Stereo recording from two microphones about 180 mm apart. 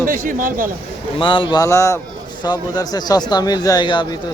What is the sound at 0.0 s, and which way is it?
Speech, 50° right (ahead or behind).